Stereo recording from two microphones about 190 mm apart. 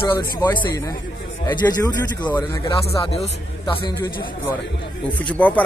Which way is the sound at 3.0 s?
30° left (ahead or behind).